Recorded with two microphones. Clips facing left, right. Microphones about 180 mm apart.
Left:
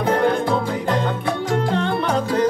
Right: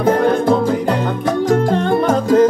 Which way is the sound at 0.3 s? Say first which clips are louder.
Right 6 dB; 45° right (ahead or behind).